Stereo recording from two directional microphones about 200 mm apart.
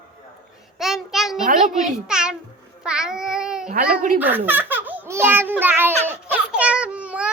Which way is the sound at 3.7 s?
40° right (ahead or behind).